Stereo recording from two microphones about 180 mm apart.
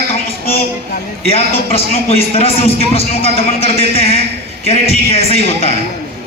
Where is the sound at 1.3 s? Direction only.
35° left (ahead or behind).